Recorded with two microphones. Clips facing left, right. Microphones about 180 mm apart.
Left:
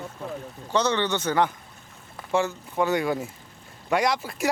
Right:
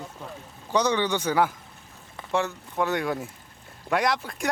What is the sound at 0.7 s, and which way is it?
Speech, 15° right (ahead or behind).